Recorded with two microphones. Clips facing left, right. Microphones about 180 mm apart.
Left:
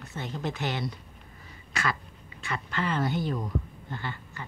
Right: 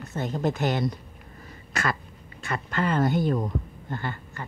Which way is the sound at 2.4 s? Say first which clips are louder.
Right 4 dB; 45° right (ahead or behind).